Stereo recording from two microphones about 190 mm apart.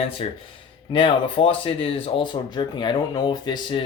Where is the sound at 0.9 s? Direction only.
25° left (ahead or behind).